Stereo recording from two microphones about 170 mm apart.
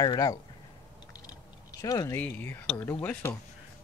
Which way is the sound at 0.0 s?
25° left (ahead or behind).